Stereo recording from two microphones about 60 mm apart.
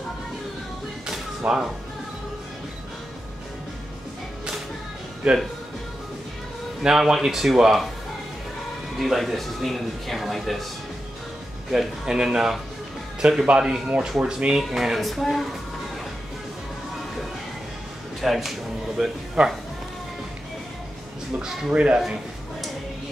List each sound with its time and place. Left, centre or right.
1.4 s speech: centre
5.2 s a man's voice: centre
6.8 s a man's voice: centre
8.9 s speech: centre
11.7 s a man's voice: centre
18.2 s speech: centre
19.4 s a man's voice: centre
21.4 s a man's voice: centre
21.7 s a man's voice: centre